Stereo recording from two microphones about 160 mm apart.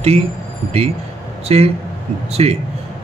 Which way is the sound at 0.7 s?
40° right (ahead or behind).